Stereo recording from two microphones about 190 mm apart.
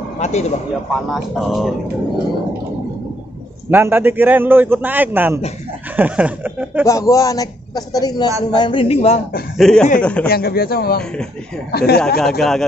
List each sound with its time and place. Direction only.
0.2 s a man's voice: 35° left (ahead or behind)
0.9 s speech: centre (ahead or behind)
3.7 s a man's voice: 10° right (ahead or behind)
6.9 s a man's voice: 15° left (ahead or behind); by 9.2 s 35° left (ahead or behind)
9.6 s speech: 5° left (ahead or behind)
10.2 s speech: 55° left (ahead or behind)
12.2 s speech: centre (ahead or behind)